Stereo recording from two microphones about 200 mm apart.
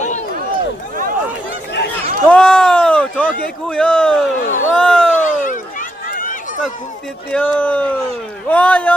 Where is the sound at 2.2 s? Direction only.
5° left (ahead or behind).